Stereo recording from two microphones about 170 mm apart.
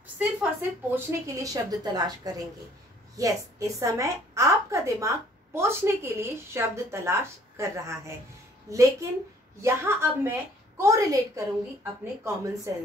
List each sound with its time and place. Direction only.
0.2 s a woman's voice: 10° right (ahead or behind)